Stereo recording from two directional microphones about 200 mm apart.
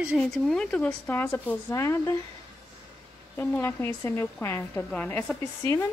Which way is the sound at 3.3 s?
10° left (ahead or behind).